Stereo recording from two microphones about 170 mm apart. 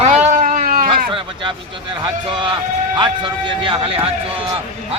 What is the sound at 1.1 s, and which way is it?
Speech, 30° right (ahead or behind).